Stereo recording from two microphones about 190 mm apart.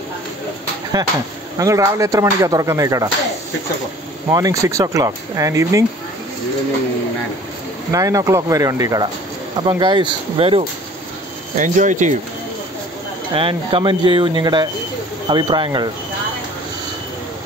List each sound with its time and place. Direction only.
1.6 s speech: 15° right (ahead or behind)
4.3 s speech: 20° right (ahead or behind)
7.9 s speech: 20° right (ahead or behind)
11.5 s speech: 40° right (ahead or behind)
13.3 s speech: 30° right (ahead or behind)